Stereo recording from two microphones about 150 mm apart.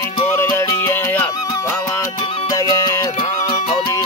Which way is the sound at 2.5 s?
25° left (ahead or behind).